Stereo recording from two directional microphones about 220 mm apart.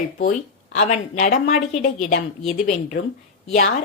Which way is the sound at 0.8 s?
35° left (ahead or behind).